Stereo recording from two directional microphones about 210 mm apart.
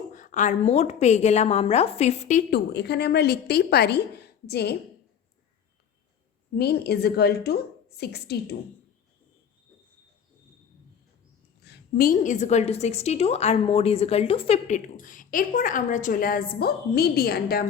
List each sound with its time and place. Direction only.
0.1 s a woman's voice: 35° left (ahead or behind)
2.5 s a woman's voice: 50° left (ahead or behind)
6.6 s a woman's voice: 50° left (ahead or behind)
11.6 s a woman's voice: 50° left (ahead or behind)